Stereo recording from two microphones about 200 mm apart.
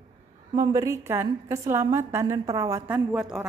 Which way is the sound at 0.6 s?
15° right (ahead or behind).